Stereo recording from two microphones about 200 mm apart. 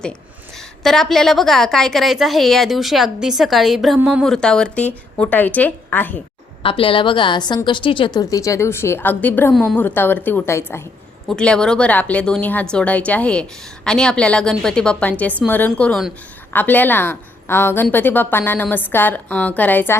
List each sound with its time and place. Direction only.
0.8 s a woman's voice: centre (ahead or behind)
6.6 s a woman's voice: 25° left (ahead or behind); by 20.0 s 10° left (ahead or behind)